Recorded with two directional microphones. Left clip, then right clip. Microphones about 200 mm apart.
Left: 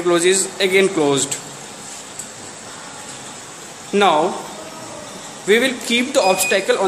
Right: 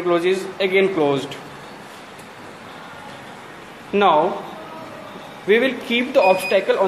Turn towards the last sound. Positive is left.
turn(degrees=20)  # may be behind; listen again after turning